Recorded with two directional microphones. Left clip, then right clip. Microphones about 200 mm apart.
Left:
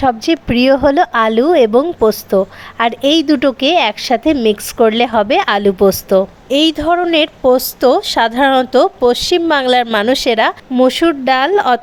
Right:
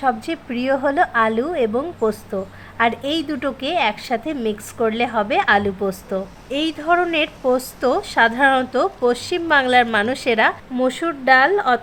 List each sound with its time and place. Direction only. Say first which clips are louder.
0.0 s a woman's voice: left 7 dB; 40° left (ahead or behind)